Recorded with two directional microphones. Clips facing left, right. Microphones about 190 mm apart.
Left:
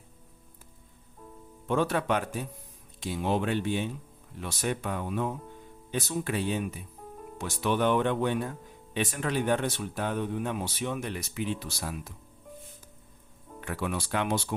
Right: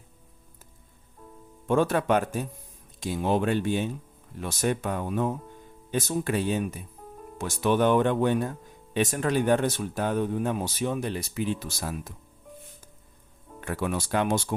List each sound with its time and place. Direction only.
1.6 s speech: 45° right (ahead or behind)
11.6 s speech: 45° right (ahead or behind)
13.6 s speech: 45° right (ahead or behind)